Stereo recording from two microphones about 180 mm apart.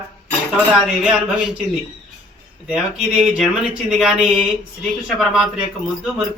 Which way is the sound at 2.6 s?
5° right (ahead or behind).